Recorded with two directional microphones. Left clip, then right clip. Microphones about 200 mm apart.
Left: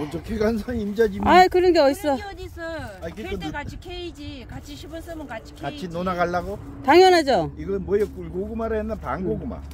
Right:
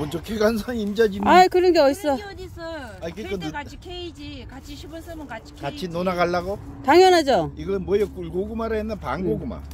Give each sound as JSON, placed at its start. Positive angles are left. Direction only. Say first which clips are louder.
{"t": 0.1, "sound": "speech", "louder": "right 3 dB", "side_deg": -30}
{"t": 1.2, "sound": "speech", "louder": "even", "side_deg": 0}
{"t": 2.2, "sound": "speech", "louder": "left 1 dB", "side_deg": 10}
{"t": 5.6, "sound": "speech", "louder": "right 3 dB", "side_deg": -45}
{"t": 6.8, "sound": "speech", "louder": "even", "side_deg": 0}
{"t": 7.6, "sound": "speech", "louder": "right 1 dB", "side_deg": -40}